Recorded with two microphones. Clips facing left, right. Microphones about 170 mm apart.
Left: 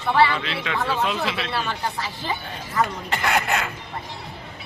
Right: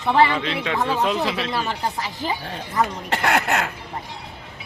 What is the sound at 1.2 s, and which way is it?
Speech, 40° right (ahead or behind).